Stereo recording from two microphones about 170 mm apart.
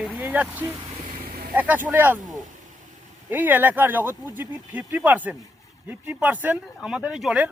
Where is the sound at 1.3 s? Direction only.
55° right (ahead or behind).